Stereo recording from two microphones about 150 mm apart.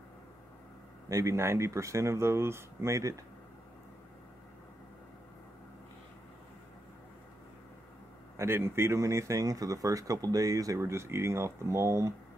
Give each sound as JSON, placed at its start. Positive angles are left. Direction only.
{"t": 1.0, "sound": "speech", "side_deg": -20}
{"t": 8.4, "sound": "speech", "side_deg": -15}